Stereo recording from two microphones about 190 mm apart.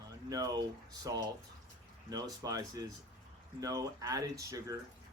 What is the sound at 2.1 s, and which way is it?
Speech, 20° right (ahead or behind).